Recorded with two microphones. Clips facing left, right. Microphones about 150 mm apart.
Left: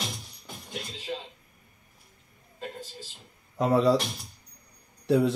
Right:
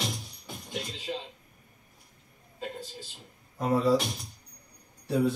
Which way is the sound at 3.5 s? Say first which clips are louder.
Left 3 dB; 90° left.